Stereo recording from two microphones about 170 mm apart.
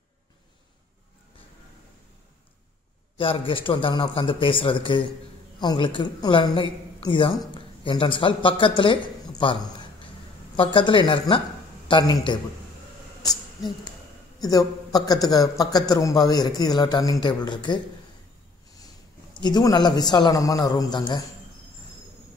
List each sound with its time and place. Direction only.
3.2 s a man's voice: 30° left (ahead or behind)
13.2 s a man's voice: 25° left (ahead or behind)
19.3 s a man's voice: 25° left (ahead or behind)